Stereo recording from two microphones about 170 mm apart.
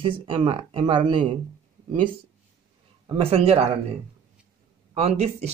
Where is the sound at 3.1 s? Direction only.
35° right (ahead or behind).